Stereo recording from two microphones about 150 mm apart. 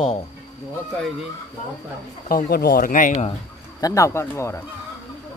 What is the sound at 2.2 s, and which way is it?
Speech, 80° left.